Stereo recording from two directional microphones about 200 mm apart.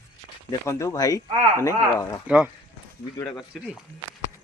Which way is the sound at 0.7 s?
15° left (ahead or behind).